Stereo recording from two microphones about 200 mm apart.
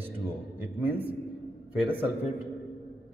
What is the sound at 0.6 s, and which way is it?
A man's voice, 10° right (ahead or behind).